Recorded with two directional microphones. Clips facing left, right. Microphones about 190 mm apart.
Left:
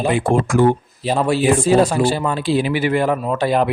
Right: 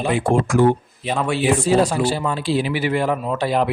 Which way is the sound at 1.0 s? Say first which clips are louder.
Left 3 dB; 35° left (ahead or behind).